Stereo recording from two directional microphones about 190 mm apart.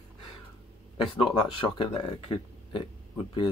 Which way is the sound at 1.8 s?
25° left (ahead or behind).